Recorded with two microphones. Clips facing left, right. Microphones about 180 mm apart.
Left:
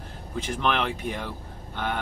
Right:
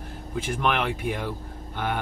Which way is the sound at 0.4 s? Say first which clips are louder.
Right 1 dB; 10° right (ahead or behind).